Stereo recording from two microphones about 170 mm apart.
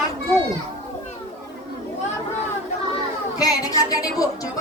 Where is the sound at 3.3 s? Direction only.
20° left (ahead or behind).